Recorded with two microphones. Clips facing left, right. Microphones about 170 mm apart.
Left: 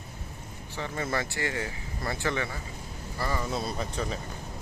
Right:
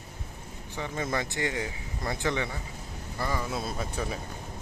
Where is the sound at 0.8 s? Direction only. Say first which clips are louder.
Even; 15° right (ahead or behind).